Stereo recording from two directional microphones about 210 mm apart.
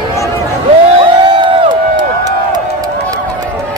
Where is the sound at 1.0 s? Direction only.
25° right (ahead or behind).